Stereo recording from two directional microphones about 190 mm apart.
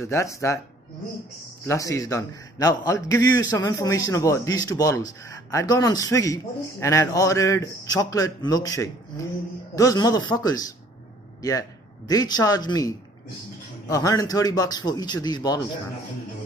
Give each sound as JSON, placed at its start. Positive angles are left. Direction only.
{"t": 0.0, "sound": "a man's voice", "side_deg": 15}
{"t": 1.6, "sound": "a man's voice", "side_deg": 15}